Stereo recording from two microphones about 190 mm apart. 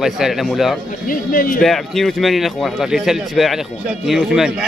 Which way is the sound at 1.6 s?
Centre (ahead or behind).